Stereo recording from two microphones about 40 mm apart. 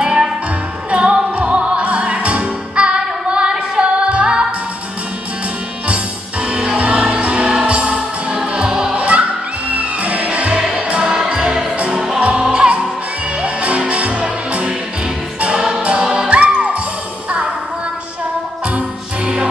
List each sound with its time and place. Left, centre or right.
0.0 s music: centre
0.8 s music: right
6.4 s music: right; by 12.2 s centre
12.2 s music: right
15.8 s music: right
18.8 s jingle bell: right